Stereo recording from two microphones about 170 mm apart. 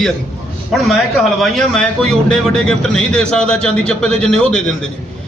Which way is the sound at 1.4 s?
5° left (ahead or behind).